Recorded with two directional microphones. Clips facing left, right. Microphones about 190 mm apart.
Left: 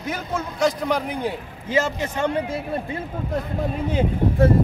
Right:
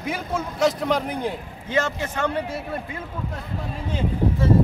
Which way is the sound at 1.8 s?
20° left (ahead or behind).